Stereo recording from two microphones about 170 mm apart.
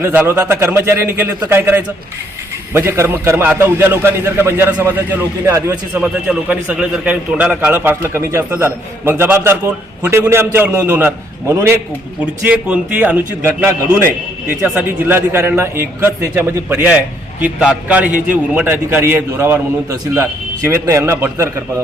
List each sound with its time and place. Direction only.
0.0 s a man's voice: 10° right (ahead or behind)